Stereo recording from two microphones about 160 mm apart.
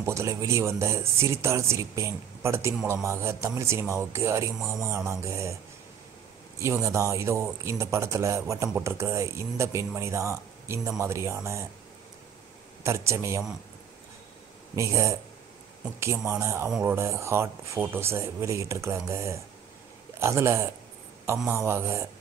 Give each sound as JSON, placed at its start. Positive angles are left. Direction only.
{"t": 0.0, "sound": "speech", "side_deg": -20}
{"t": 6.6, "sound": "speech", "side_deg": -20}
{"t": 12.8, "sound": "speech", "side_deg": -15}
{"t": 14.8, "sound": "speech", "side_deg": -20}
{"t": 16.3, "sound": "speech", "side_deg": -15}
{"t": 16.6, "sound": "speech", "side_deg": -5}
{"t": 16.9, "sound": "speech", "side_deg": -15}